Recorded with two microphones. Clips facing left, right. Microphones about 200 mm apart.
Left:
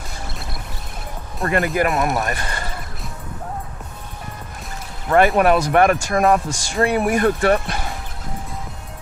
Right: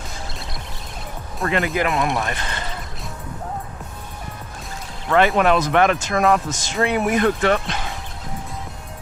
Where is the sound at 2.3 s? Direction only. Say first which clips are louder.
Left 1 dB; 50° left (ahead or behind).